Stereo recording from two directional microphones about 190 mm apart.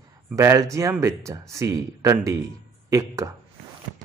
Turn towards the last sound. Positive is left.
turn(degrees=-15)  # may be behind; listen again after turning